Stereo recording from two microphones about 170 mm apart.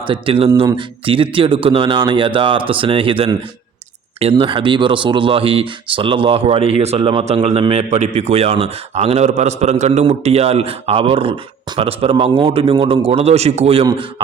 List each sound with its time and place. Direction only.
0.0 s speech: 30° right (ahead or behind)